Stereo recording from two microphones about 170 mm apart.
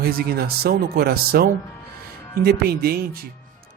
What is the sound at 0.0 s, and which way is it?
Speech, 65° right (ahead or behind).